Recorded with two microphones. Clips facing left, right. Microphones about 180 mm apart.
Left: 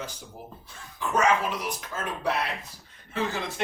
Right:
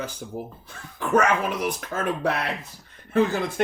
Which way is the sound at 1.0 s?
55° right (ahead or behind).